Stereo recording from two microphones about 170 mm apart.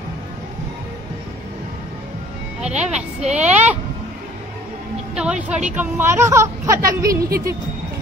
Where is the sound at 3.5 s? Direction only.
10° right (ahead or behind).